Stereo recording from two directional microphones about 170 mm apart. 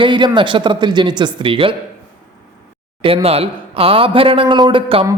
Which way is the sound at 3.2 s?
35° right (ahead or behind).